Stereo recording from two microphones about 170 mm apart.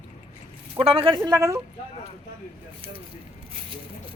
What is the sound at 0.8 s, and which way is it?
Speech, 35° right (ahead or behind).